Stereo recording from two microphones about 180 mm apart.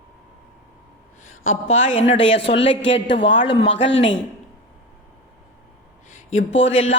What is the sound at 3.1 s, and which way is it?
Speech, 80° left.